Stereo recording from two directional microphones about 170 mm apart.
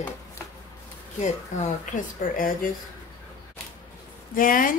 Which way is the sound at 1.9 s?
55° left (ahead or behind).